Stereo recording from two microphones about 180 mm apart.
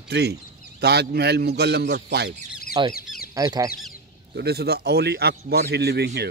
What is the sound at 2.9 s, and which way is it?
Chicken, 55° left (ahead or behind).